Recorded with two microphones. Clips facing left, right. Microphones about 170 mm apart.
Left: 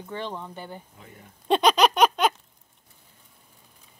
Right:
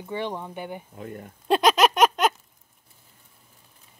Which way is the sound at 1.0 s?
55° right (ahead or behind).